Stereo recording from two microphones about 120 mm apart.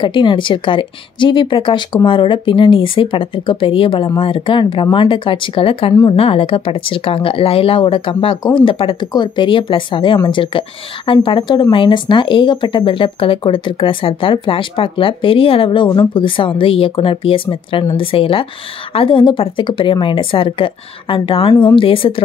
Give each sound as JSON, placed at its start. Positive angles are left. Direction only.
{"t": 0.0, "sound": "speech", "side_deg": 40}